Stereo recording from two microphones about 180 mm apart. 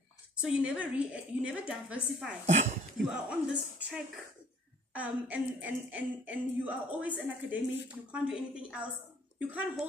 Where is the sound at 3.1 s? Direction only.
5° right (ahead or behind).